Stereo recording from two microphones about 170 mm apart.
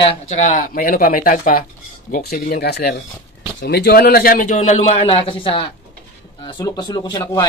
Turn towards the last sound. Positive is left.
turn(degrees=25)  # may be behind; listen again after turning